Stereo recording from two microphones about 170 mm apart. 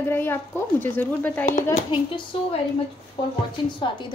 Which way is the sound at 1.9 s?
30° left (ahead or behind).